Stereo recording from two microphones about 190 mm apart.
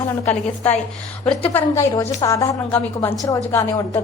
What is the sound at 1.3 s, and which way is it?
A woman's voice, 10° left (ahead or behind).